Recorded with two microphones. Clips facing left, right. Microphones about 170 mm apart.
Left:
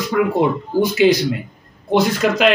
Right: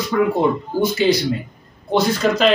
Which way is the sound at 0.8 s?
15° left (ahead or behind).